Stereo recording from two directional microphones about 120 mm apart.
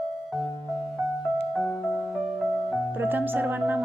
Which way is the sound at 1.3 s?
5° left (ahead or behind).